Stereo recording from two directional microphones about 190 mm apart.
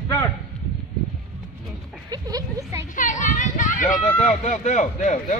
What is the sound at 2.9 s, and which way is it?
A man's voice, 45° left (ahead or behind).